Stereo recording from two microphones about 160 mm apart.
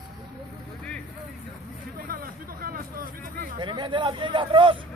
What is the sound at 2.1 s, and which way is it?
Hubbub, 65° right (ahead or behind).